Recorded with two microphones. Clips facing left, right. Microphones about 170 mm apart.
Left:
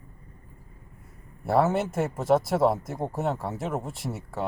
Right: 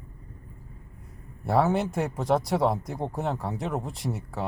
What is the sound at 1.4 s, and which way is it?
Speech, centre (ahead or behind).